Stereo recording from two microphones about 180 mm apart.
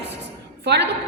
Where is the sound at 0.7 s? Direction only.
70° right (ahead or behind).